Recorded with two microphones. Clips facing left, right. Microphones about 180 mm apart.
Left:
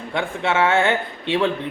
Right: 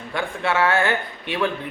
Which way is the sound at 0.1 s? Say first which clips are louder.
Left 1 dB; 25° left (ahead or behind).